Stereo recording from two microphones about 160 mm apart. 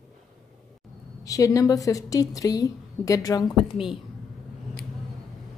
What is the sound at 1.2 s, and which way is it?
A woman's voice, 20° left (ahead or behind).